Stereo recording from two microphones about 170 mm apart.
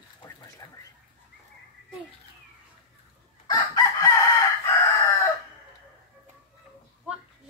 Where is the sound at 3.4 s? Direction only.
20° left (ahead or behind).